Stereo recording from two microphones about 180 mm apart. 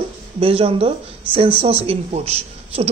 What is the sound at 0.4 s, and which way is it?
Speech, 30° right (ahead or behind).